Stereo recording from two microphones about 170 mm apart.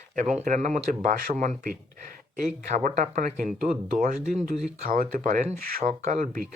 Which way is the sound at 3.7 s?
30° right (ahead or behind).